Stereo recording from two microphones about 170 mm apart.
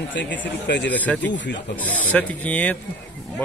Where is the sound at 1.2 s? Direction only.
90° left.